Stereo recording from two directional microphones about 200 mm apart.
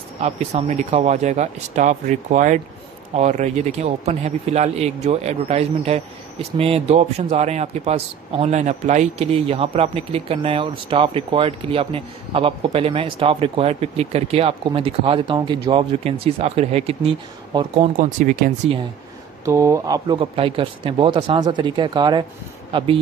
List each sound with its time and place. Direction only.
0.2 s a man's voice: 35° right (ahead or behind)
17.9 s a man's voice: 40° right (ahead or behind)
19.4 s a man's voice: 15° right (ahead or behind)